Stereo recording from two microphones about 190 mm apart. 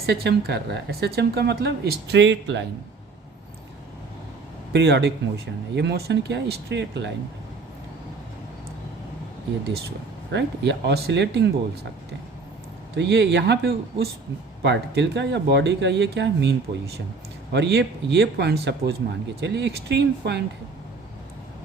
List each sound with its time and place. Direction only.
0.0 s speech: 60° right (ahead or behind)
4.7 s speech: 65° right (ahead or behind)
10.3 s speech: 65° right (ahead or behind)
13.0 s speech: 65° right (ahead or behind)